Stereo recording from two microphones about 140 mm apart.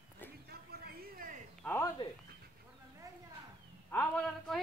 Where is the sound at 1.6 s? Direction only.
15° left (ahead or behind).